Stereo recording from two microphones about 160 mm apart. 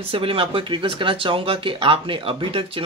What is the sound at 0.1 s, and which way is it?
Speech, 35° right (ahead or behind).